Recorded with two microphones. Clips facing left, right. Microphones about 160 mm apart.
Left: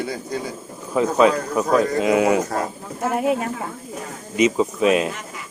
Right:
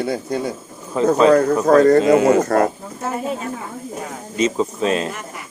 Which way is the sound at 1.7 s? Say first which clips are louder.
Right 7 dB; 65° right (ahead or behind).